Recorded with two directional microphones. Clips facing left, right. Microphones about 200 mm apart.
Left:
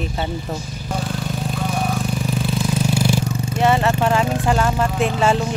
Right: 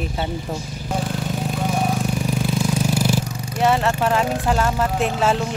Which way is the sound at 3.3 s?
25° left (ahead or behind).